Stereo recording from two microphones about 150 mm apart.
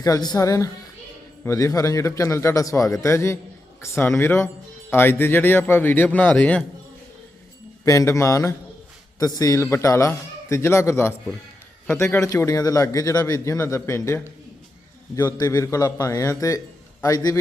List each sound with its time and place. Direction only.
0.0 s a man's voice: 25° left (ahead or behind); by 6.7 s 10° left (ahead or behind)
7.9 s speech: 20° left (ahead or behind)
15.4 s speech: 20° left (ahead or behind)